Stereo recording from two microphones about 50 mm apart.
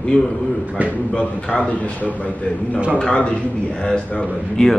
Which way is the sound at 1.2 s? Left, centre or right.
Left.